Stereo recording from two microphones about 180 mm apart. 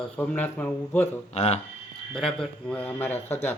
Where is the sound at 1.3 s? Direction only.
35° left (ahead or behind).